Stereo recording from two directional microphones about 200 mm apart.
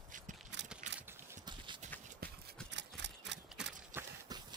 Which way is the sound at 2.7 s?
60° right (ahead or behind).